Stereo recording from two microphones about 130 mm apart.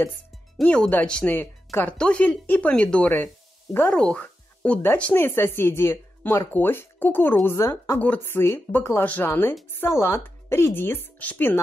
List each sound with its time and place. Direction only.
0.6 s speech: 10° left (ahead or behind)